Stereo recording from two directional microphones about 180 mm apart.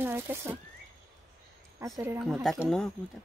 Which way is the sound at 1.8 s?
15° right (ahead or behind).